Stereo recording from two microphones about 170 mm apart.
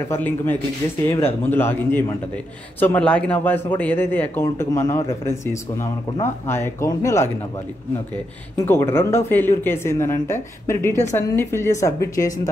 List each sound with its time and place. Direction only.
0.1 s a man's voice: 10° left (ahead or behind)
8.6 s a man's voice: 15° left (ahead or behind)